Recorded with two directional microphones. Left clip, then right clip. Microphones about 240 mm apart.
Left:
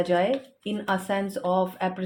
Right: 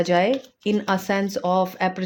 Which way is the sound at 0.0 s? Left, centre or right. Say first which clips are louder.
Right 4 dB; right.